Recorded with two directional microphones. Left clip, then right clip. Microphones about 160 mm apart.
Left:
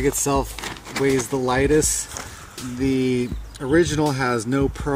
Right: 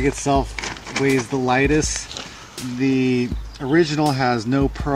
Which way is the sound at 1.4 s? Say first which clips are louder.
Even; 30° right (ahead or behind).